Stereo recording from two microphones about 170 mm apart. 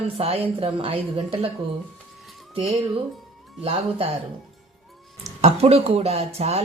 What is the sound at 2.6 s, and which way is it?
Speech, 35° right (ahead or behind).